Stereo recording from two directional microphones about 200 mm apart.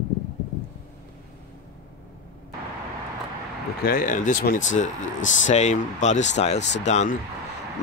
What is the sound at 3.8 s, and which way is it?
Speech, 45° left (ahead or behind).